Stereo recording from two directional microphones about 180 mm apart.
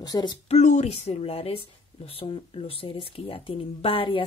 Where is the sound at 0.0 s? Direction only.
20° left (ahead or behind).